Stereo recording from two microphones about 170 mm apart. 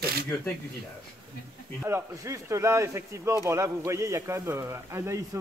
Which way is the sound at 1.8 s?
15° right (ahead or behind).